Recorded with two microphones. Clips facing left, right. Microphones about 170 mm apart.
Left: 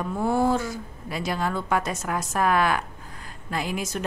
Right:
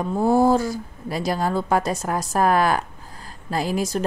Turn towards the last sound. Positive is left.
turn(degrees=-35)  # may be behind; listen again after turning